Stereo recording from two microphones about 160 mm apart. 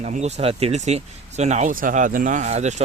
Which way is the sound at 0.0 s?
45° right (ahead or behind).